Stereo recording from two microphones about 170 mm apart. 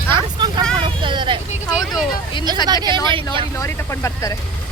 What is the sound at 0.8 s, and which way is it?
Speech, 30° right (ahead or behind).